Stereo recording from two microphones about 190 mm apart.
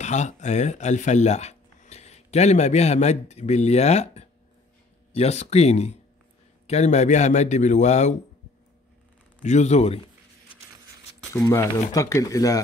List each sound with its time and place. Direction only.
0.0 s a man's voice: 40° left (ahead or behind)
9.4 s a man's voice: 35° left (ahead or behind)
11.3 s speech: 15° left (ahead or behind)